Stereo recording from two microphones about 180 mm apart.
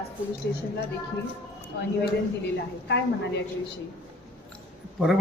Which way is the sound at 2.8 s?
75° left (ahead or behind).